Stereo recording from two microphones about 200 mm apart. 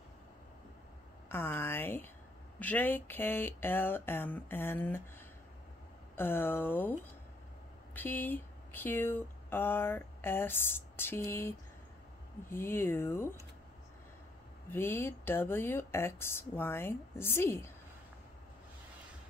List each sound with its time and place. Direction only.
1.3 s speech: 10° left (ahead or behind)
6.1 s speech: 10° left (ahead or behind)
14.7 s speech: 10° left (ahead or behind)